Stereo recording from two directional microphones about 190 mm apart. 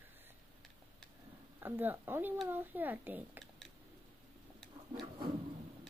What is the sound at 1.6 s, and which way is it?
A child's voice, 10° right (ahead or behind).